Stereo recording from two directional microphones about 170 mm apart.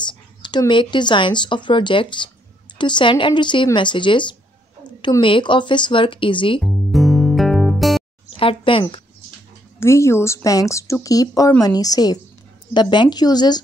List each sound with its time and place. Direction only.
0.4 s speech: 25° left (ahead or behind)
6.6 s music: centre (ahead or behind)
8.4 s speech: 30° left (ahead or behind)
9.8 s speech: 15° left (ahead or behind)